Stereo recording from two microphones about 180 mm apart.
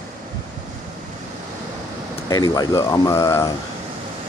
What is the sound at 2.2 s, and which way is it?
Speech, 20° left (ahead or behind).